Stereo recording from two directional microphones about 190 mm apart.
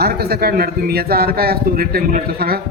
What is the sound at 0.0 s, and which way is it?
A man's voice, 55° right (ahead or behind).